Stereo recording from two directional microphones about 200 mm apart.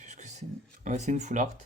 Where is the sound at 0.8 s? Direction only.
35° right (ahead or behind).